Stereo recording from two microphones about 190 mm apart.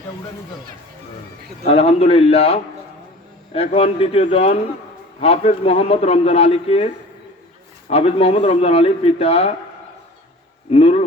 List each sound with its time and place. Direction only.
1.6 s a man's voice: 30° left (ahead or behind)
10.7 s a man's voice: 30° left (ahead or behind)